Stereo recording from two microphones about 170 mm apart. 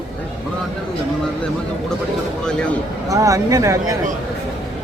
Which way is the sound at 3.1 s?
20° right (ahead or behind).